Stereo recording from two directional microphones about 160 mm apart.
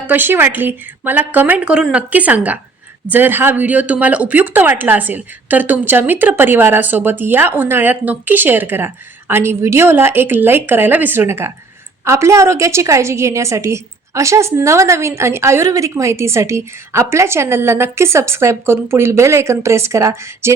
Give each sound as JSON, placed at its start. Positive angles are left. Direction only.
{"t": 0.1, "sound": "speech", "side_deg": -15}